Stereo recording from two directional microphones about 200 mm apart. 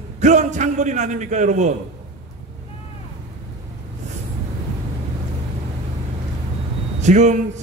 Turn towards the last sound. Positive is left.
turn(degrees=-35)  # may be behind; listen again after turning